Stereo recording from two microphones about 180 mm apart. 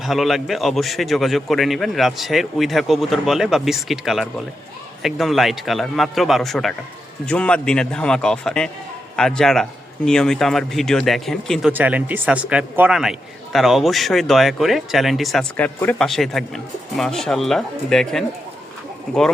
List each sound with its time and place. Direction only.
0.0 s a man's voice: centre (ahead or behind)